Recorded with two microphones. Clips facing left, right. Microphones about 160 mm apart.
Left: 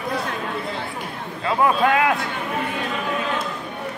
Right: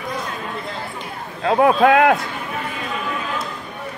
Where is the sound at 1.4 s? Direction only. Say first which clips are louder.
Right 5 dB; 55° right (ahead or behind).